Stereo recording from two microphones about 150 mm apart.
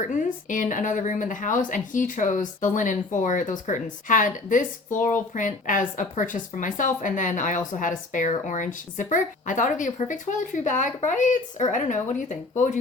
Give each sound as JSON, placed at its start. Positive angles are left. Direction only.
{"t": 0.0, "sound": "a woman's voice", "side_deg": 60}